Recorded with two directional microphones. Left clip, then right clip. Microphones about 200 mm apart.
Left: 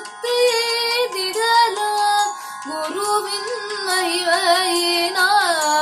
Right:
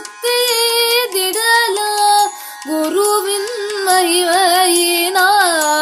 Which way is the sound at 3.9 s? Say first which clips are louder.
Right 6 dB; 45° right (ahead or behind).